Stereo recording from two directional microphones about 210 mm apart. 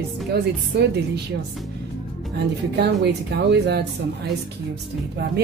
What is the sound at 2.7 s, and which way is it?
Speech, 50° right (ahead or behind).